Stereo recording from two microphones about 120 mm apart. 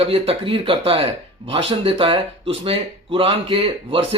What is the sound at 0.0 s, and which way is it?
Speech, 50° right (ahead or behind).